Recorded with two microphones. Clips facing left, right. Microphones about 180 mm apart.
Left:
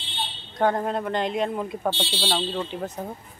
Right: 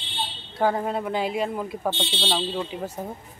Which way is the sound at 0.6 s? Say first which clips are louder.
Even; 5° right (ahead or behind).